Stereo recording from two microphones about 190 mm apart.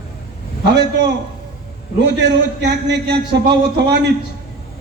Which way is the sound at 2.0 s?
65° right (ahead or behind).